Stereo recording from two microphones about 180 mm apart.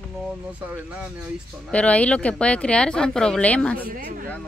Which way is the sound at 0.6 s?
5° right (ahead or behind).